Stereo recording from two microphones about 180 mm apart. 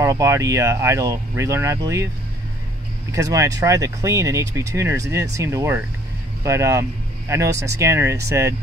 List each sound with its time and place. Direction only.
0.0 s speech: 15° right (ahead or behind)
3.1 s speech: 20° right (ahead or behind)